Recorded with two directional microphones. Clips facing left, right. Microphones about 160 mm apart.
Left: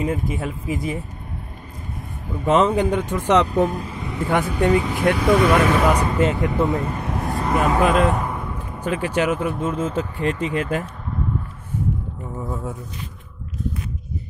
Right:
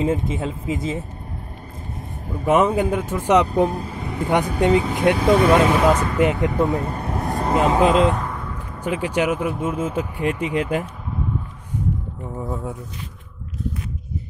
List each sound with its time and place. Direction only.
0.0 s speech: 25° right (ahead or behind)
2.4 s speech: 10° right (ahead or behind)
3.6 s vehicle: 35° right (ahead or behind)
4.2 s speech: 20° right (ahead or behind)
6.8 s vehicle: 35° right (ahead or behind)
7.5 s speech: 25° right (ahead or behind)
8.1 s a sound: 15° left (ahead or behind)
8.8 s speech: 10° right (ahead or behind)
12.4 s speech: 15° right (ahead or behind)